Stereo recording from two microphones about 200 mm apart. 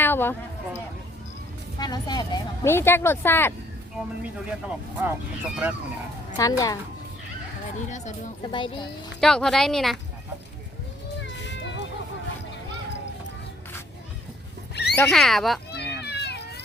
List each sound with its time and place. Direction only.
0.0 s a sound: 10° left (ahead or behind)
1.8 s speech: 20° left (ahead or behind)
3.9 s a woman's voice: 5° right (ahead or behind)
6.4 s speech: 15° left (ahead or behind)
7.9 s speech: 35° left (ahead or behind)
8.4 s speech: 25° left (ahead or behind)
9.2 s a woman's voice: 5° left (ahead or behind)
11.4 s a sound: 60° left (ahead or behind)
14.9 s a woman's voice: 5° left (ahead or behind)
15.7 s children playing: 55° left (ahead or behind)